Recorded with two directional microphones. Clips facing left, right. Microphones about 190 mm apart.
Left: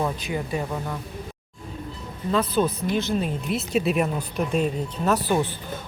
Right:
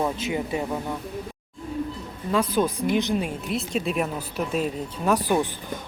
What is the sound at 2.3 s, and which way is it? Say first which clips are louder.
A woman's voice: even; 10° right (ahead or behind).